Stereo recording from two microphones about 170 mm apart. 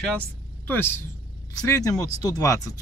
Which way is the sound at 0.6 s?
10° left (ahead or behind).